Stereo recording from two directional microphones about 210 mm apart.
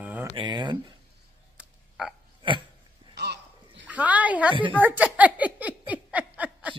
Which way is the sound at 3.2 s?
55° right (ahead or behind).